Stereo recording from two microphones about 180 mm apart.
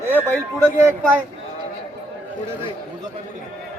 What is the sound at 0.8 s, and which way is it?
Speech, 10° right (ahead or behind).